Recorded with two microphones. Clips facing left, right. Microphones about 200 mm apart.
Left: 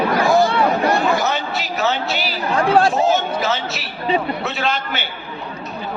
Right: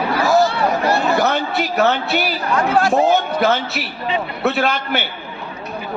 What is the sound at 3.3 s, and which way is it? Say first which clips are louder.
A man's voice: right 4 dB; 60° right (ahead or behind).